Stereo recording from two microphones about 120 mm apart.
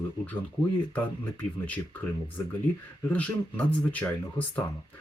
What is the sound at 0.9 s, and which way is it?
Speech, 15° left (ahead or behind).